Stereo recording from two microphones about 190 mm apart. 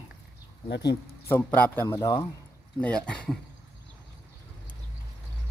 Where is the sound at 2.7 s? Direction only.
5° left (ahead or behind).